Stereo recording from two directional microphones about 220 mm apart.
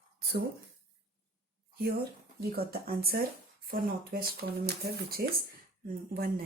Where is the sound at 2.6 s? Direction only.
45° right (ahead or behind).